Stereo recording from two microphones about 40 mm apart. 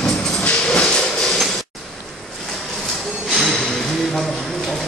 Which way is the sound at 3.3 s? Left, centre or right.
Centre.